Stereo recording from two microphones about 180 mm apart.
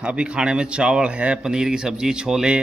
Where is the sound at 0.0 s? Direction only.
5° right (ahead or behind).